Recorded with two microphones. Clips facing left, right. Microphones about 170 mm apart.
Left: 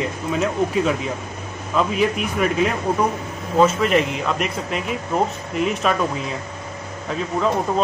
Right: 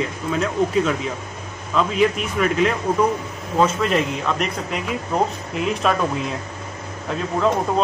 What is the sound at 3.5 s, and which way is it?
Speech, centre (ahead or behind).